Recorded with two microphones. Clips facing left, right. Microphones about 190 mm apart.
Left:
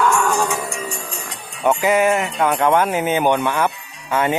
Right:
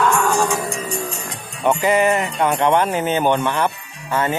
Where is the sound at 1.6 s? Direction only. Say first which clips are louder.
Even; 5° left (ahead or behind).